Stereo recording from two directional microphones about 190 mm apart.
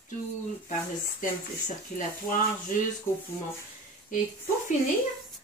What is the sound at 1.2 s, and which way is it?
Speech, 45° left (ahead or behind).